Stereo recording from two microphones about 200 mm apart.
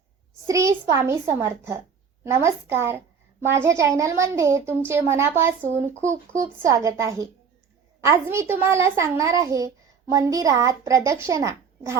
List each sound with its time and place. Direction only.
0.4 s a child's voice: 15° right (ahead or behind)